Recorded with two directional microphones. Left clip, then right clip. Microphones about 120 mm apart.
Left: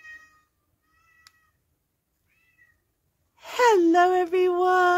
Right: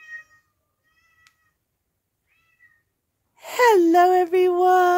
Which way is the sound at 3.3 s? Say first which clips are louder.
Right 3 dB; 65° right (ahead or behind).